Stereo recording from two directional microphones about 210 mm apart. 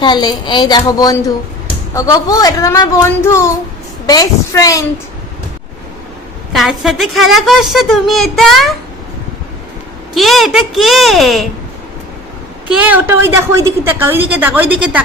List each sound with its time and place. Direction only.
0.0 s a woman's voice: 20° left (ahead or behind)
6.5 s a woman's voice: centre (ahead or behind)
10.2 s a woman's voice: centre (ahead or behind)
12.8 s a woman's voice: 10° right (ahead or behind)